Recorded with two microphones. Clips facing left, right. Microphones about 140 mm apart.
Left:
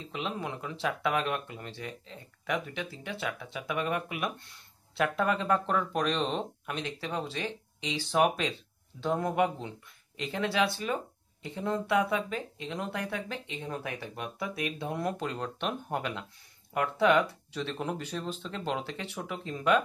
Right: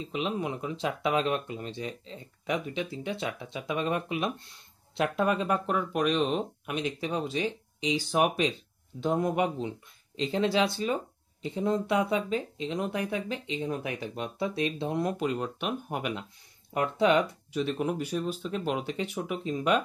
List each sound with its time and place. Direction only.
0.0 s speech: 20° right (ahead or behind)